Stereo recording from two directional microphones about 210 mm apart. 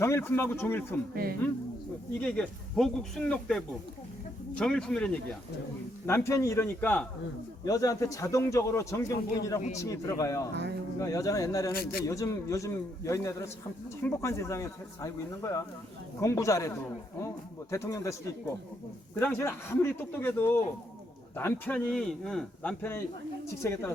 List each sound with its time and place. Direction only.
0.0 s a man's voice: 10° left (ahead or behind)
1.1 s speech: 45° right (ahead or behind)
2.2 s a man's voice: 5° left (ahead or behind)
11.7 s speech: 45° left (ahead or behind)
12.0 s a man's voice: 15° left (ahead or behind)
19.2 s a man's voice: 10° left (ahead or behind)